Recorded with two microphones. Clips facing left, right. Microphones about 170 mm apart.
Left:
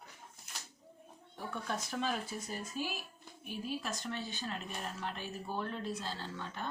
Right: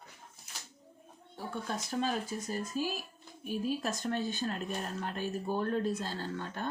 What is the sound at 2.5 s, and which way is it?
Speech, 40° right (ahead or behind).